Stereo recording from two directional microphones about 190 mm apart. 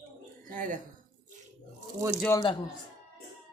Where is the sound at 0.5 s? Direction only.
45° right (ahead or behind).